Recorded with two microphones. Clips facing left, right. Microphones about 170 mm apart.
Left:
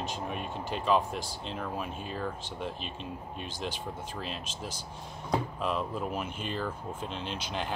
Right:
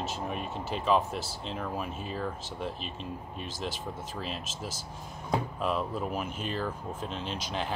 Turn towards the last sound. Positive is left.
turn(degrees=0)  # may be behind; listen again after turning